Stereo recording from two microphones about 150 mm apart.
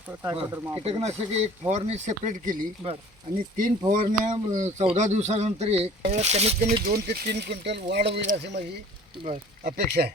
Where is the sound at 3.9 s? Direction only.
55° right (ahead or behind).